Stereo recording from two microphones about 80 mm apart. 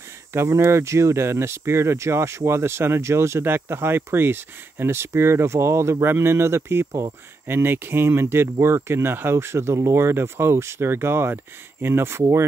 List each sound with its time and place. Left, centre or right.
0.3 s speech: right